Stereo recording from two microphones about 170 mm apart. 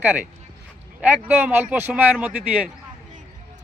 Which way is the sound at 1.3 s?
10° right (ahead or behind).